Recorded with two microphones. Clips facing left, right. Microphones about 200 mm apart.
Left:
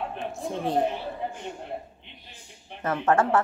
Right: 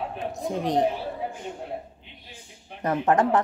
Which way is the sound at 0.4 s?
15° right (ahead or behind).